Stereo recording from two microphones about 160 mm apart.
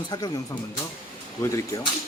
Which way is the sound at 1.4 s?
20° left (ahead or behind).